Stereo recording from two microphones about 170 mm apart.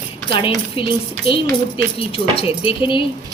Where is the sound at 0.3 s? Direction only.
30° left (ahead or behind).